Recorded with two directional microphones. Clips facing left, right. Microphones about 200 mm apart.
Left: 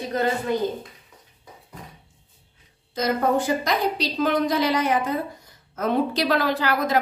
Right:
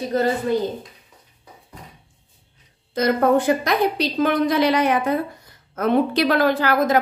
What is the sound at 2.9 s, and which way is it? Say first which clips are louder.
A woman's voice: right 5 dB; 60° right (ahead or behind).